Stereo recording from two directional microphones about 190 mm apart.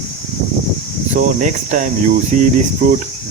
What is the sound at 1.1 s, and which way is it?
Speech, 40° right (ahead or behind).